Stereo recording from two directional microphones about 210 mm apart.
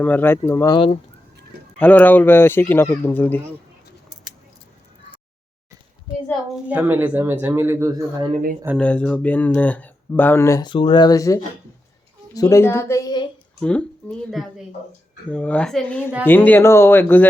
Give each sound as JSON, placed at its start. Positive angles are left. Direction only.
{"t": 0.0, "sound": "speech", "side_deg": 10}
{"t": 6.7, "sound": "speech", "side_deg": -10}
{"t": 8.3, "sound": "speech", "side_deg": -40}
{"t": 8.8, "sound": "speech", "side_deg": 5}
{"t": 13.6, "sound": "speech", "side_deg": 5}